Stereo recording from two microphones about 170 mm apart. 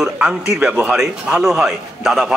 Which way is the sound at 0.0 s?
5° right (ahead or behind).